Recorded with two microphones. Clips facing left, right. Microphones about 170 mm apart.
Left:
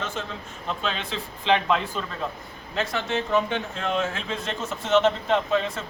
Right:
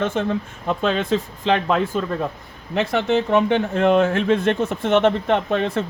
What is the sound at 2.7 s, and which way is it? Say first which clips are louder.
Speech: right 8 dB; 65° right (ahead or behind).